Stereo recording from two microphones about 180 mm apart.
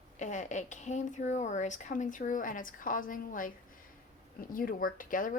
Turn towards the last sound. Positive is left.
turn(degrees=50)  # may be behind; listen again after turning